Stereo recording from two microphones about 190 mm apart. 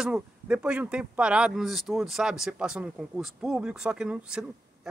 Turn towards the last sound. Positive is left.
turn(degrees=-5)  # may be behind; listen again after turning